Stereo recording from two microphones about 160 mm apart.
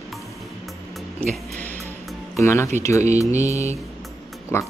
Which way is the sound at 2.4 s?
15° left (ahead or behind).